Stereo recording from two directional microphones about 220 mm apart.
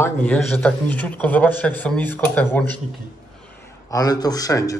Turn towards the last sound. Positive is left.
turn(degrees=15)  # may be behind; listen again after turning